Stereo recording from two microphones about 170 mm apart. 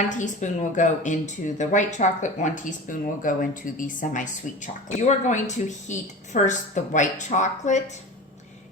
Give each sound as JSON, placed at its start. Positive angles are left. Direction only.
{"t": 0.0, "sound": "speech", "side_deg": 45}